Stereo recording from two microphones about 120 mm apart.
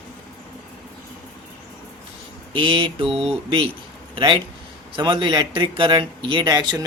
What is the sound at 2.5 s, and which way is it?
Speech, 45° right (ahead or behind).